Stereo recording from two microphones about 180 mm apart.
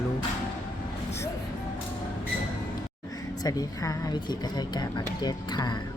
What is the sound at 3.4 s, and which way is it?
Speech, 20° left (ahead or behind).